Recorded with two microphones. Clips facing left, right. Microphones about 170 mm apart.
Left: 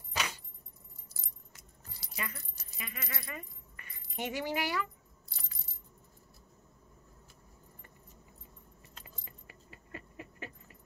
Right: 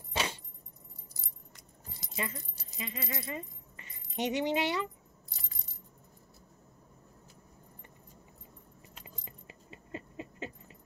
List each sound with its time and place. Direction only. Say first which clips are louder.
0.1 s keys jangling: right 3 dB; 30° right (ahead or behind)
2.0 s speech: right 4 dB; 25° right (ahead or behind)
9.0 s dog: right 3 dB; 20° right (ahead or behind)